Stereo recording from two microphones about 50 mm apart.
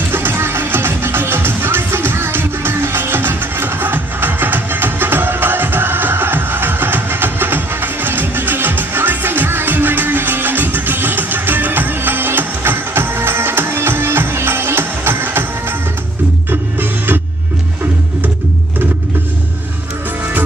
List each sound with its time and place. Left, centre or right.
0.1 s music: right
16.4 s music: right